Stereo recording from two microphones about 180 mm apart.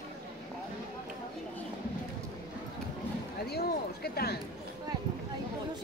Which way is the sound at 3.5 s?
60° left (ahead or behind).